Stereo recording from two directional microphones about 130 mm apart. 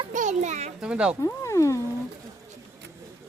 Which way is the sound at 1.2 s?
25° left (ahead or behind).